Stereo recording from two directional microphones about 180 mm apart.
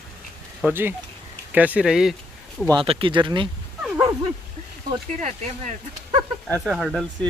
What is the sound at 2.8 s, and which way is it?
Speech, 30° right (ahead or behind).